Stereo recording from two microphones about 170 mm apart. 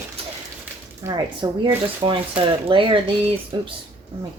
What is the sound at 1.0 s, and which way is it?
Speech, 25° right (ahead or behind).